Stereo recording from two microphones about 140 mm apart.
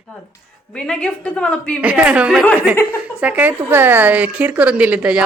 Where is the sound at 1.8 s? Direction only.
10° right (ahead or behind).